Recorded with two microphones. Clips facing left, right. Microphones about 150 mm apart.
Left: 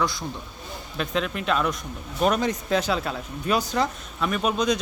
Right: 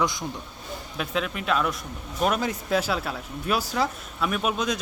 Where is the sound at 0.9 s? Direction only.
5° right (ahead or behind).